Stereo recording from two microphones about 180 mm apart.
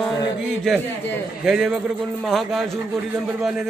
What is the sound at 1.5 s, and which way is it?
Speech, centre (ahead or behind).